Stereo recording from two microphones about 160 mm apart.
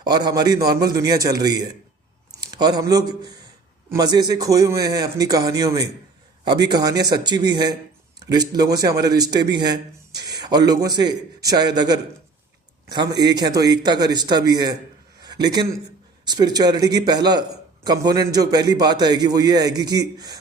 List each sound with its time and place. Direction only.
0.0 s a man's voice: 25° right (ahead or behind)
2.3 s a sound: 25° right (ahead or behind)
2.9 s a man's voice: 25° right (ahead or behind)